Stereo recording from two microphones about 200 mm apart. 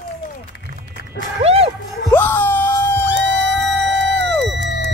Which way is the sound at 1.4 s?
30° right (ahead or behind).